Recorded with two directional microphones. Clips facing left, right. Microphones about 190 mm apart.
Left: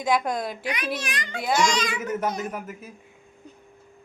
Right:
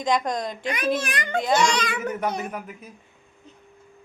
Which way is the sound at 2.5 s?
5° left (ahead or behind).